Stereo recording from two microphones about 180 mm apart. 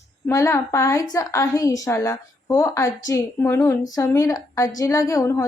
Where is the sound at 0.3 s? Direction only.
15° left (ahead or behind).